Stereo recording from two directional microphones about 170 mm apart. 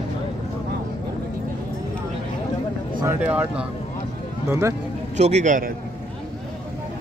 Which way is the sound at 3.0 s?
10° right (ahead or behind).